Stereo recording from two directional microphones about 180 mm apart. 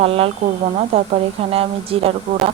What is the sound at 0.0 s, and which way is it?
Speech, 30° right (ahead or behind).